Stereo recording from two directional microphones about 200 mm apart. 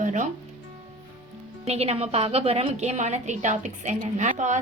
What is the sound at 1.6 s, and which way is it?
A woman's voice, 30° right (ahead or behind).